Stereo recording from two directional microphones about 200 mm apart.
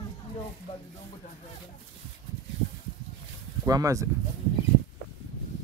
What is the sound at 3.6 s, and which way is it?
Speech, 15° right (ahead or behind).